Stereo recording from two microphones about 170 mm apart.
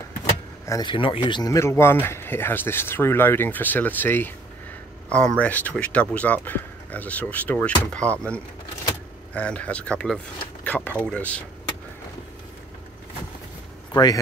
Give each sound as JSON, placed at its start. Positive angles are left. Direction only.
{"t": 0.7, "sound": "speech", "side_deg": 25}
{"t": 5.4, "sound": "speech", "side_deg": 10}
{"t": 13.9, "sound": "a man's voice", "side_deg": 25}